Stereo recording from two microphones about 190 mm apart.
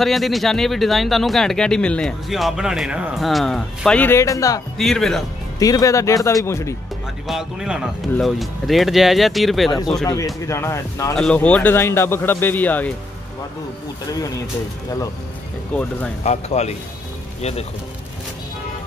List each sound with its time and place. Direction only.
0.0 s speech: centre (ahead or behind); by 4.6 s 15° left (ahead or behind)
4.7 s speech: centre (ahead or behind)
5.6 s speech: 20° left (ahead or behind)
7.2 s speech: 5° right (ahead or behind)
10.4 s speech: 15° left (ahead or behind)
11.1 s speech: 5° left (ahead or behind)
14.1 s speech: 20° left (ahead or behind)
15.7 s speech: 5° left (ahead or behind)
16.3 s speech: 35° left (ahead or behind)